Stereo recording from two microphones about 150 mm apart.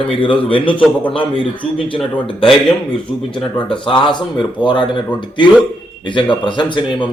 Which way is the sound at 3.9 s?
30° left (ahead or behind).